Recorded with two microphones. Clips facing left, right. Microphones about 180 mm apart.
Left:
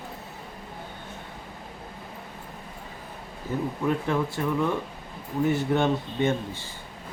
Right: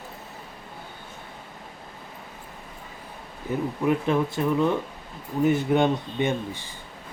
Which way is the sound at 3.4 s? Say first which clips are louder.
Right 3 dB; 15° right (ahead or behind).